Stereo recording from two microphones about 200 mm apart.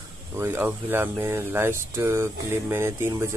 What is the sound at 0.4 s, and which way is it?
Speech, 10° right (ahead or behind).